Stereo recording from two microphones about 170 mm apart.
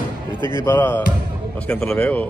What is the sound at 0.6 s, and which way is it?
Speech, 15° left (ahead or behind).